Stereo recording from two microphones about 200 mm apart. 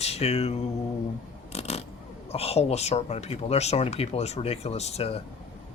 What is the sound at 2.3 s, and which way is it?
Speech, 30° left (ahead or behind).